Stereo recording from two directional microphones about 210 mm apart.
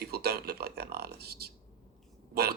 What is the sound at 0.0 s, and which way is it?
Speech, 50° right (ahead or behind).